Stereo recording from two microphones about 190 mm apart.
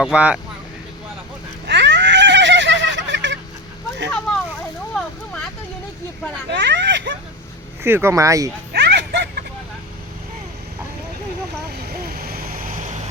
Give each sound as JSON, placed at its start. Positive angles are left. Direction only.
{"t": 0.0, "sound": "speech", "side_deg": -5}
{"t": 1.6, "sound": "a sound", "side_deg": -70}
{"t": 4.9, "sound": "vehicle", "side_deg": 5}
{"t": 6.5, "sound": "vehicle", "side_deg": -65}
{"t": 7.9, "sound": "speech", "side_deg": -10}
{"t": 8.7, "sound": "a sound", "side_deg": -60}
{"t": 12.0, "sound": "vehicle", "side_deg": -50}